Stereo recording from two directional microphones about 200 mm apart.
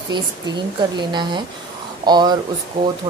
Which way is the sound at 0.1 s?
20° right (ahead or behind).